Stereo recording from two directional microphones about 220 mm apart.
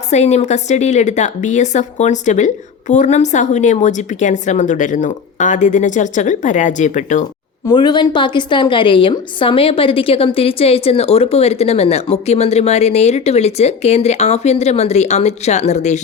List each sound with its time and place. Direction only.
0.1 s a woman's voice: 30° left (ahead or behind)
7.7 s a woman's voice: 20° left (ahead or behind)